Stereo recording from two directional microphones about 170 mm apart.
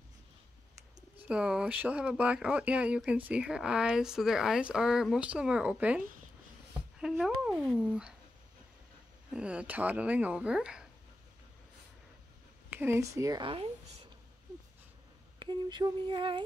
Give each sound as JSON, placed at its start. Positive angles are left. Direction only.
{"t": 1.2, "sound": "speech", "side_deg": -5}
{"t": 9.3, "sound": "speech", "side_deg": -5}
{"t": 12.6, "sound": "speech", "side_deg": -10}
{"t": 13.4, "sound": "speech", "side_deg": -30}
{"t": 15.3, "sound": "a sound", "side_deg": -25}